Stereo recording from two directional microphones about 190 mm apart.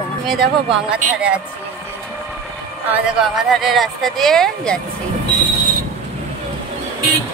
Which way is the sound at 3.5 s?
Centre (ahead or behind).